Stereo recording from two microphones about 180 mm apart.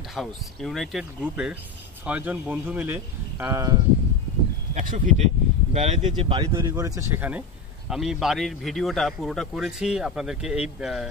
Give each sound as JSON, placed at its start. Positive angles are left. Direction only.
{"t": 0.1, "sound": "a man's voice", "side_deg": 0}
{"t": 4.7, "sound": "speech", "side_deg": -40}
{"t": 6.7, "sound": "a man's voice", "side_deg": -15}